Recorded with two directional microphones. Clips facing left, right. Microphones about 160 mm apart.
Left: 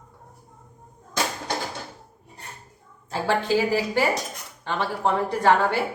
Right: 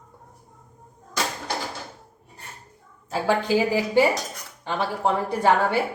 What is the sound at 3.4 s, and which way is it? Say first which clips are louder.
Speech: even; 15° right (ahead or behind).